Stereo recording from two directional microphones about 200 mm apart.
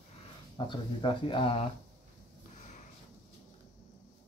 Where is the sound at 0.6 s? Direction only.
25° left (ahead or behind).